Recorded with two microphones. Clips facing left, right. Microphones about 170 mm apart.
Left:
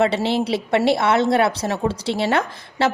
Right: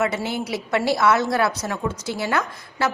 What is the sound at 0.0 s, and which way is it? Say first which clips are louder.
Speech: left 5 dB; 30° left (ahead or behind).